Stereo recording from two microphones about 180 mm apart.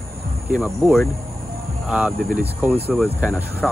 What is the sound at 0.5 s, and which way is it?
Speech, 5° right (ahead or behind).